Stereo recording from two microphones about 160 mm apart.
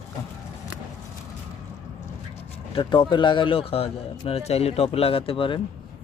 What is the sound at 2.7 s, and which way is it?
A man's voice, 30° left (ahead or behind).